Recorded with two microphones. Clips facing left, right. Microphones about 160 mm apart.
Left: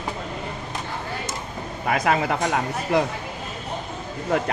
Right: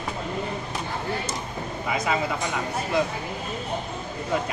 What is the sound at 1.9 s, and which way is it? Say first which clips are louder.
Speech: left 5 dB; 70° left (ahead or behind).